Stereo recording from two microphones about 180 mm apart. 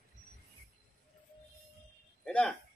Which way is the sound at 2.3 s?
5° left (ahead or behind).